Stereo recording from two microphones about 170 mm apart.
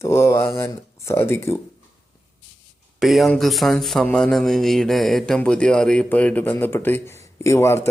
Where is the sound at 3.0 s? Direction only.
Centre (ahead or behind).